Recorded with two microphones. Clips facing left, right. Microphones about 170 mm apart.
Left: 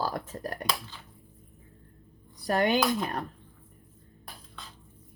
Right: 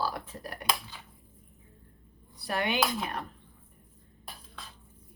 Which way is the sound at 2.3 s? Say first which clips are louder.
Left 6 dB; 45° left (ahead or behind).